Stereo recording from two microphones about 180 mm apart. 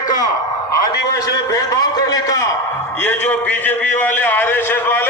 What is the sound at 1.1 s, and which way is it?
A man's voice, 20° left (ahead or behind).